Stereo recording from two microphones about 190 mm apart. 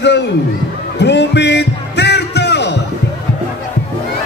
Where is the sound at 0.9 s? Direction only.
65° left (ahead or behind).